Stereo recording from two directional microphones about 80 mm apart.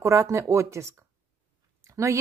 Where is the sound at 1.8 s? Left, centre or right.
Right.